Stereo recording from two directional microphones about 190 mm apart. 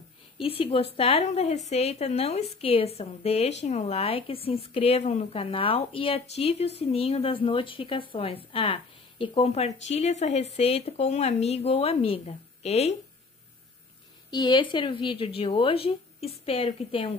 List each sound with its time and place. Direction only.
0.4 s a woman's voice: 30° left (ahead or behind)
14.3 s speech: 20° left (ahead or behind)